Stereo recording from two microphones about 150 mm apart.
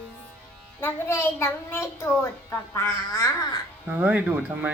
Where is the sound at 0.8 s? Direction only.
15° left (ahead or behind).